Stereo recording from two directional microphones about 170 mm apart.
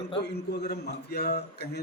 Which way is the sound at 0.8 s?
75° left (ahead or behind).